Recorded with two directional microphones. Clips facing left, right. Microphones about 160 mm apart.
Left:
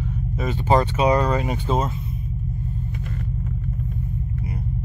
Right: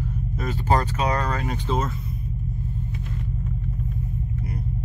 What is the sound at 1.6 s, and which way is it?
Speech, 35° left (ahead or behind).